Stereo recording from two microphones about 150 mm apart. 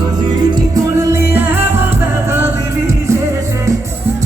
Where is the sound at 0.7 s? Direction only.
20° right (ahead or behind).